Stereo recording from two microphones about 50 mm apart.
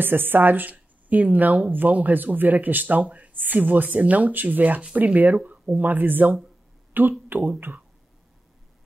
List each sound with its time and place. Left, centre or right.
0.0 s speech: right